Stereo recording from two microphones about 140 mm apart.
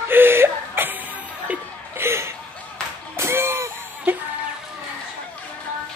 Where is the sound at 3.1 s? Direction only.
20° right (ahead or behind).